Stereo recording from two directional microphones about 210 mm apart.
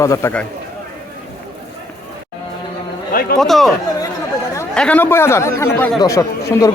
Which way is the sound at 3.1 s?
45° left (ahead or behind).